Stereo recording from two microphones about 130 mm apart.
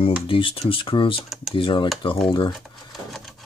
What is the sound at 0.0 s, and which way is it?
Speech, 45° left (ahead or behind).